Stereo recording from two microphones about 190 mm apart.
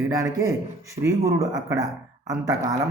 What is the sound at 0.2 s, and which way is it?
Speech, 15° right (ahead or behind).